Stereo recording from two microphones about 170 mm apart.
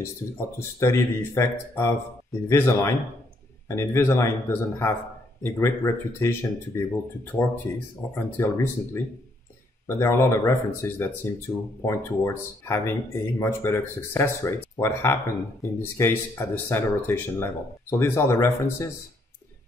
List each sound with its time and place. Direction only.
0.0 s speech: 15° left (ahead or behind)
8.1 s speech: 15° left (ahead or behind)